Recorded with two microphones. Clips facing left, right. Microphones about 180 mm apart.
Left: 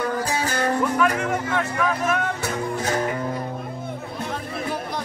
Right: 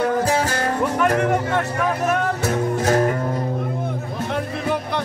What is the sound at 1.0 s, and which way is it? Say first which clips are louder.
Speech: right 4 dB; 60° right (ahead or behind).